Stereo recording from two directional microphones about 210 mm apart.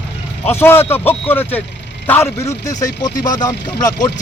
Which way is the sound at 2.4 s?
35° left (ahead or behind).